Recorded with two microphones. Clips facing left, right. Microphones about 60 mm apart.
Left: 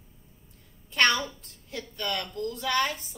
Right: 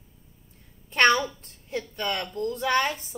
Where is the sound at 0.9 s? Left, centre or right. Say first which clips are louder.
Right 4 dB; right.